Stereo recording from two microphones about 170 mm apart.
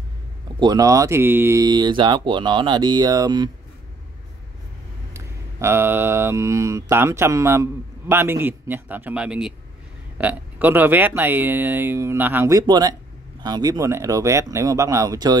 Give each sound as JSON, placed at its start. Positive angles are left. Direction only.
{"t": 0.6, "sound": "speech", "side_deg": -20}
{"t": 5.1, "sound": "speech", "side_deg": -15}